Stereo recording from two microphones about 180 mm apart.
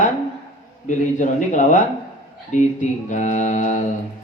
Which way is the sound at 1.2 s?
45° left (ahead or behind).